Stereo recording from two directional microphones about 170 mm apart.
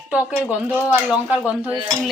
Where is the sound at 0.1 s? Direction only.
5° right (ahead or behind).